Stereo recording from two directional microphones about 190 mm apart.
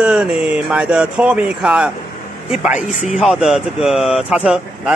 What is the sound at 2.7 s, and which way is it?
Speech, 40° left (ahead or behind).